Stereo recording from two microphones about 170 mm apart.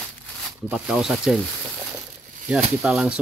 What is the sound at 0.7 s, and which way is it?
Speech, 5° right (ahead or behind).